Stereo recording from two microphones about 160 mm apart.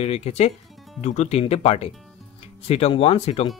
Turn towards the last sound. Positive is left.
turn(degrees=40)  # may be behind; listen again after turning